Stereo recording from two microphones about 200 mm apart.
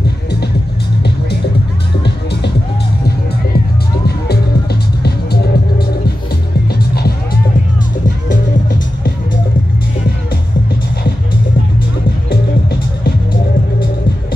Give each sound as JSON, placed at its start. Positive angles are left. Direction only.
{"t": 3.5, "sound": "music", "side_deg": 55}
{"t": 8.3, "sound": "music", "side_deg": 45}
{"t": 12.3, "sound": "music", "side_deg": 50}